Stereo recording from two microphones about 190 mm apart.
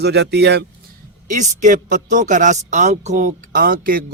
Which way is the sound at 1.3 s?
40° right (ahead or behind).